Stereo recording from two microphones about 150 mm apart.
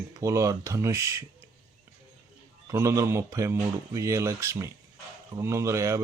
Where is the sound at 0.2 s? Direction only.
20° right (ahead or behind).